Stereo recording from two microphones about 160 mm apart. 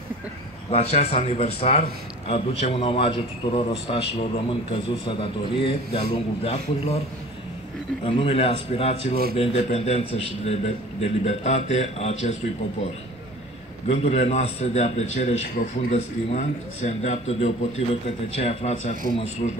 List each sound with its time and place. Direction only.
0.7 s a man's voice: 40° left (ahead or behind)
8.0 s a man's voice: 35° left (ahead or behind)
13.8 s a man's voice: 40° left (ahead or behind)